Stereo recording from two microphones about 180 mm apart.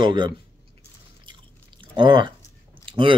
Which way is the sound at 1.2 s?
25° right (ahead or behind).